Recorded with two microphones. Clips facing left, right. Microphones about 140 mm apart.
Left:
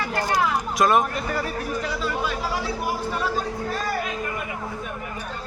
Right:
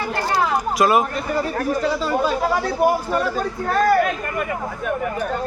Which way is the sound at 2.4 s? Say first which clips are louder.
Right 8 dB; 55° right (ahead or behind).